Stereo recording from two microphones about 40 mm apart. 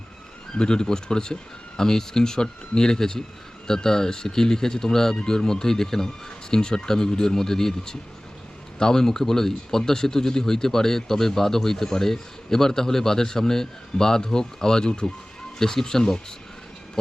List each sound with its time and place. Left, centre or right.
0.5 s speech: left